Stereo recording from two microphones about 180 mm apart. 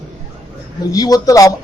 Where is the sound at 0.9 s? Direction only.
20° left (ahead or behind).